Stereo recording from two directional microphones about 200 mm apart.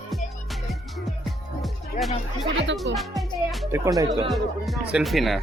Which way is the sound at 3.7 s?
20° right (ahead or behind).